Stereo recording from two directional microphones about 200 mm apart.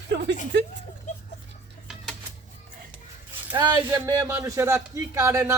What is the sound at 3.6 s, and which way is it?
A man's voice, 20° right (ahead or behind).